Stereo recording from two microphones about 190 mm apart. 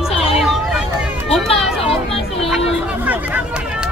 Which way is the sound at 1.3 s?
Centre (ahead or behind).